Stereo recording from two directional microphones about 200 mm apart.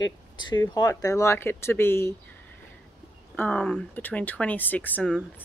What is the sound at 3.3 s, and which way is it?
Speech, 10° left (ahead or behind).